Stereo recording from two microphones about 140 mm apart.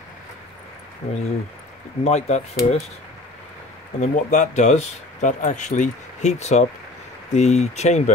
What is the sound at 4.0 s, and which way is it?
Speech, 60° left (ahead or behind).